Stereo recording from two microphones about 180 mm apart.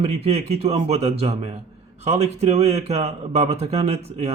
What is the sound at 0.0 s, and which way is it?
Speech, 35° right (ahead or behind).